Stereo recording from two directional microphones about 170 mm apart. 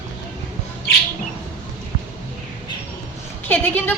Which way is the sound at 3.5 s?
10° left (ahead or behind).